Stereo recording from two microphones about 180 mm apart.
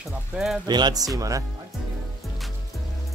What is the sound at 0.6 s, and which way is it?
Speech, 25° right (ahead or behind).